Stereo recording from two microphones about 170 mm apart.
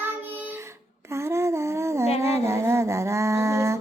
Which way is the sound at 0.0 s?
10° right (ahead or behind).